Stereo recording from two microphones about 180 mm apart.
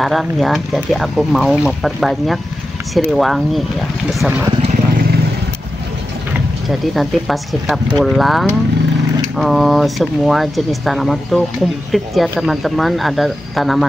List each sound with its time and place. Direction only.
0.0 s speech: centre (ahead or behind)
6.9 s speech: centre (ahead or behind)